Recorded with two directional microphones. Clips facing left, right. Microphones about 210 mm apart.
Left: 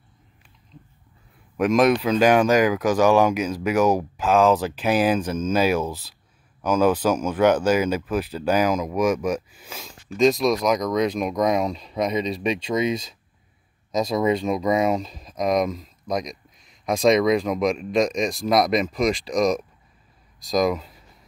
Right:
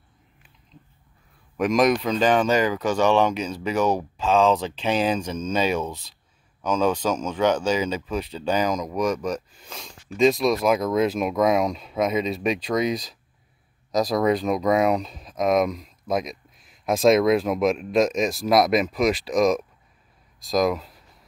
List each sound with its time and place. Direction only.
1.6 s speech: centre (ahead or behind)